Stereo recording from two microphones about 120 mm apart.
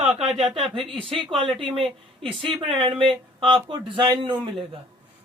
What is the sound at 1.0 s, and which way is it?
Speech, 50° right (ahead or behind).